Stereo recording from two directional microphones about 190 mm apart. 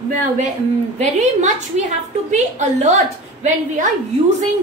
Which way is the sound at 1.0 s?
40° right (ahead or behind).